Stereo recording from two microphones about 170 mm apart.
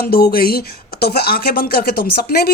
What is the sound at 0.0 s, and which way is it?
Speech, 65° left (ahead or behind).